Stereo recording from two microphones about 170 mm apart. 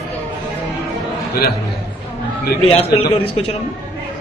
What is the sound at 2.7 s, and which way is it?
Speech, 35° left (ahead or behind).